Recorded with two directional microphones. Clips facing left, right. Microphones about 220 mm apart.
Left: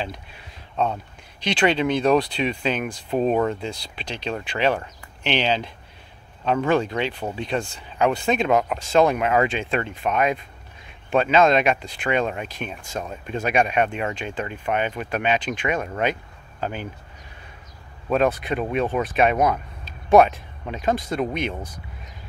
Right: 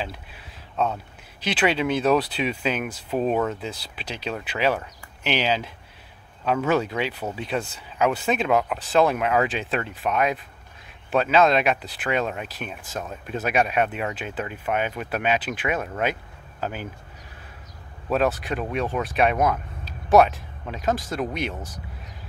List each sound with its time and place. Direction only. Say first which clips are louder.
0.0 s speech: left 2 dB; 5° right (ahead or behind)
18.1 s speech: left 2 dB; centre (ahead or behind)